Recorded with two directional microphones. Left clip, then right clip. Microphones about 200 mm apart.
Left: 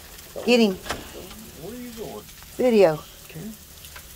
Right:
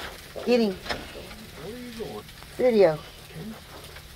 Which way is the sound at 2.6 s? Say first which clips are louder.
Left 2 dB; 40° left (ahead or behind).